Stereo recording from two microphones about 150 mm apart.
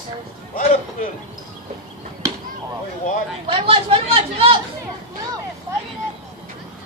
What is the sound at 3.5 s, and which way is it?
Chatter, 35° right (ahead or behind).